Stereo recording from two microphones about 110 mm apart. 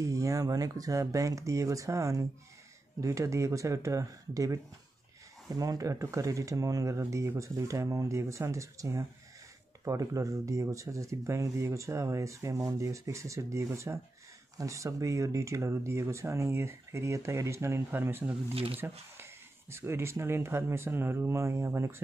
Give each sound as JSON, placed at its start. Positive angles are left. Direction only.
{"t": 0.0, "sound": "speech", "side_deg": -30}
{"t": 18.5, "sound": "speech", "side_deg": -60}
{"t": 19.7, "sound": "speech", "side_deg": -20}